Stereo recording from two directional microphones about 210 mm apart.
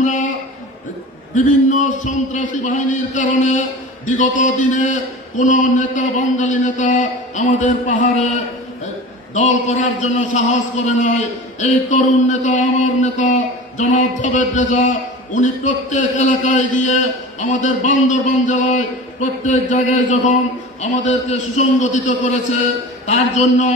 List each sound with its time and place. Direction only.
0.0 s a sound: 35° left (ahead or behind)
1.3 s a man's voice: 35° left (ahead or behind)
9.3 s a man's voice: 35° left (ahead or behind)